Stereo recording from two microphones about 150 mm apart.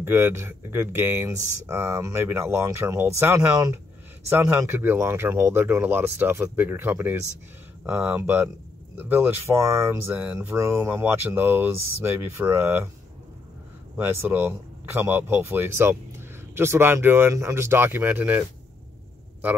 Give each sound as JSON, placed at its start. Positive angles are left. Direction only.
{"t": 0.0, "sound": "speech", "side_deg": -15}
{"t": 13.9, "sound": "speech", "side_deg": -10}